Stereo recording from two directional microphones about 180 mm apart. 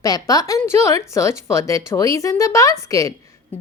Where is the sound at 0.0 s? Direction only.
20° left (ahead or behind).